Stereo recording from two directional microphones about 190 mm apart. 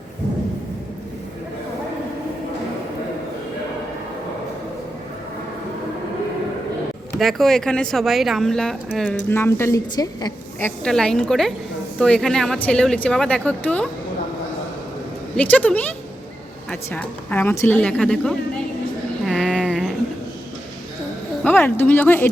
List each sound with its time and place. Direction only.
7.2 s a woman's voice: centre (ahead or behind)
9.3 s a woman's voice: 15° left (ahead or behind)
10.8 s a woman's voice: 5° left (ahead or behind)
15.4 s a woman's voice: 10° left (ahead or behind)
19.2 s a sound: centre (ahead or behind)
21.4 s speech: 10° left (ahead or behind)